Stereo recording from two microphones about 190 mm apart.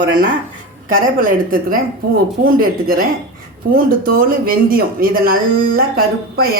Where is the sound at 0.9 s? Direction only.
45° right (ahead or behind).